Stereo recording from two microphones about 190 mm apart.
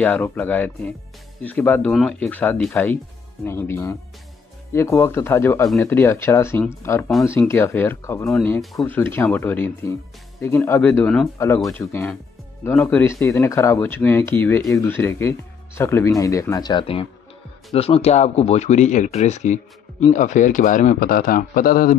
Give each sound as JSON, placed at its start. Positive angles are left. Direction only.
{"t": 0.0, "sound": "speech", "side_deg": 5}
{"t": 8.3, "sound": "speech", "side_deg": 0}